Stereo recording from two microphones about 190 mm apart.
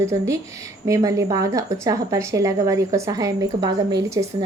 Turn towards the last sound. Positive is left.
turn(degrees=-20)  # may be behind; listen again after turning